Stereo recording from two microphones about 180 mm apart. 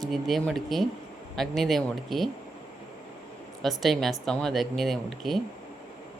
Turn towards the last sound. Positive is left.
turn(degrees=0)  # may be behind; listen again after turning